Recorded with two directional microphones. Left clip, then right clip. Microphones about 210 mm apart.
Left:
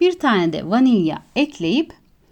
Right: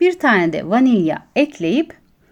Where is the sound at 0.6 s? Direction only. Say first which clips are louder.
Right 2 dB; 20° left (ahead or behind).